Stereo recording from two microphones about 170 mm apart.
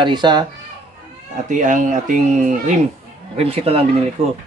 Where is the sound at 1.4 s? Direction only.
50° right (ahead or behind).